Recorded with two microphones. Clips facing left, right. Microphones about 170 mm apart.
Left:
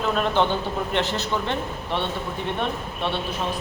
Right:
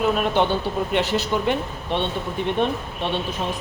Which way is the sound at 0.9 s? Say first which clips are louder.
Right 3 dB; 15° right (ahead or behind).